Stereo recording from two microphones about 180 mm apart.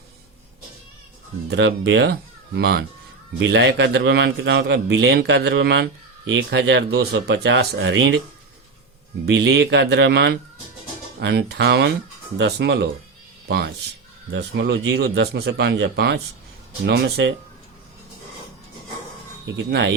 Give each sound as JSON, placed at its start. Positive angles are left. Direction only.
{"t": 1.5, "sound": "a man's voice", "side_deg": -80}
{"t": 2.6, "sound": "a man's voice", "side_deg": -60}
{"t": 9.2, "sound": "a man's voice", "side_deg": -75}
{"t": 14.3, "sound": "a man's voice", "side_deg": -75}
{"t": 19.5, "sound": "a man's voice", "side_deg": -75}